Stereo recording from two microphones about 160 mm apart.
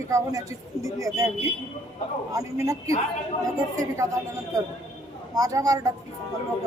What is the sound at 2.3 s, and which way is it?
A woman's voice, 20° right (ahead or behind).